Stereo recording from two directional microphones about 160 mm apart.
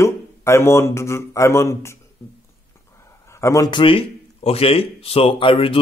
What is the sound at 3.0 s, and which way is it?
A man's voice, 15° left (ahead or behind).